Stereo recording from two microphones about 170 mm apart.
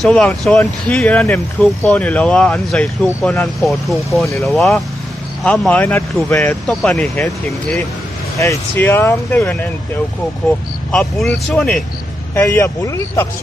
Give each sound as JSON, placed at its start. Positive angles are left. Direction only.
{"t": 0.0, "sound": "speech", "side_deg": 5}
{"t": 10.9, "sound": "speech", "side_deg": 5}
{"t": 12.4, "sound": "speech", "side_deg": 15}